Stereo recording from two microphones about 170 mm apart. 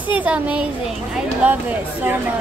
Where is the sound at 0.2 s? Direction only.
5° right (ahead or behind).